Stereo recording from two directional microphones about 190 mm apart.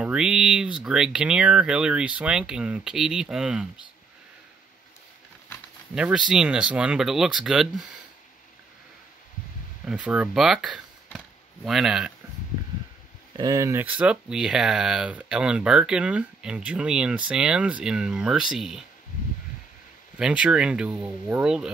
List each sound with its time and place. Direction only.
0.0 s speech: 5° right (ahead or behind)
5.9 s speech: 5° right (ahead or behind)
9.8 s speech: 5° right (ahead or behind)
13.4 s speech: 15° right (ahead or behind); by 18.9 s centre (ahead or behind)
20.2 s speech: 5° right (ahead or behind)